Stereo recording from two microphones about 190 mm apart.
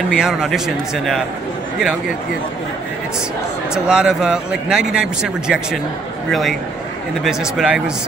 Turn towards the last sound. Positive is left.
turn(degrees=-5)  # may be behind; listen again after turning